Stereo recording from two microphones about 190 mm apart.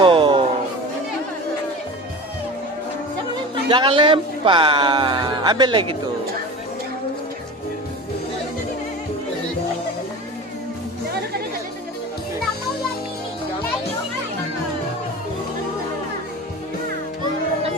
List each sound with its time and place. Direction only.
0.0 s music: 25° right (ahead or behind)
3.5 s speech: 25° right (ahead or behind)